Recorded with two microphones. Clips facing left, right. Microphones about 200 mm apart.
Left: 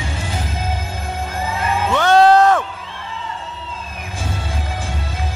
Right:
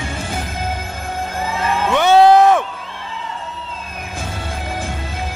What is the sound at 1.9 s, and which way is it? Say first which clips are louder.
Music: right 2 dB; 15° right (ahead or behind).